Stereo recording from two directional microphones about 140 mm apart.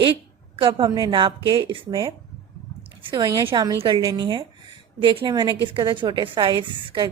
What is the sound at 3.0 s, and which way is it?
A woman's voice, 35° right (ahead or behind).